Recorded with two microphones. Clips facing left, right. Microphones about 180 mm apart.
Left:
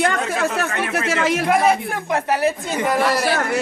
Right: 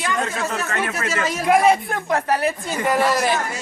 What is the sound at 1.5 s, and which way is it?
Speech, 5° left (ahead or behind).